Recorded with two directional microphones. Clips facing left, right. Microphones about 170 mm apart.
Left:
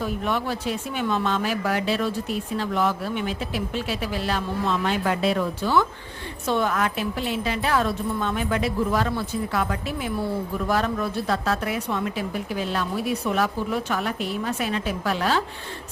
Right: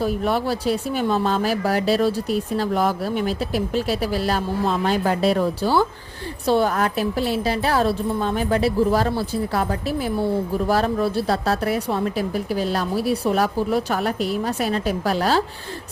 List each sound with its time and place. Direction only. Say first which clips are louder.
0.0 s speech: right 5 dB; 35° right (ahead or behind)